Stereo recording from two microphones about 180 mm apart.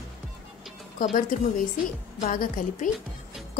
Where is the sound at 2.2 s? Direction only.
50° left (ahead or behind).